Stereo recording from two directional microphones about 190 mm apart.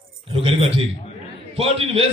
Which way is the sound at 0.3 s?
30° right (ahead or behind).